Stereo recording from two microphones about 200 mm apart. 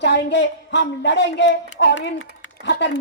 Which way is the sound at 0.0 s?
60° left (ahead or behind).